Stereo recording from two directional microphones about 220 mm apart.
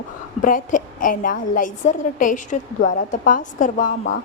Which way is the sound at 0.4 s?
35° left (ahead or behind).